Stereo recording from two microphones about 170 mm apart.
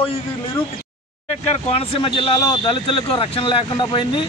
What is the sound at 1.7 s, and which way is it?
A man's voice, 35° left (ahead or behind).